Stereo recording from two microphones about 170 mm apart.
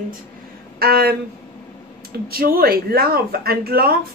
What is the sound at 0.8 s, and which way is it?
Speech, 65° right (ahead or behind).